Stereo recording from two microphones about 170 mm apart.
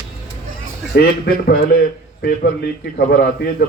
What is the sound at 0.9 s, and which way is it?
Speech, 65° left (ahead or behind).